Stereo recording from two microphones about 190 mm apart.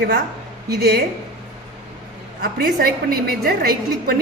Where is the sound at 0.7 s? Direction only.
55° right (ahead or behind).